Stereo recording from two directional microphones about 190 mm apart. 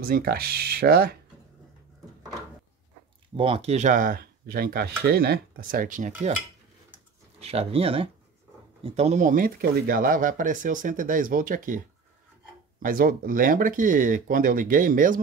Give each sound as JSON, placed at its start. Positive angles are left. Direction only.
{"t": 0.0, "sound": "speech", "side_deg": -55}
{"t": 3.3, "sound": "speech", "side_deg": -30}
{"t": 7.3, "sound": "speech", "side_deg": -35}
{"t": 12.8, "sound": "speech", "side_deg": -50}